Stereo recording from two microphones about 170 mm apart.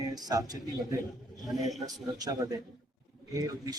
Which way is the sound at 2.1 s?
20° right (ahead or behind).